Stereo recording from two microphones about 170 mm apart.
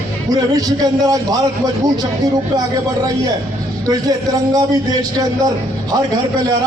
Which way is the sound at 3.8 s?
25° right (ahead or behind).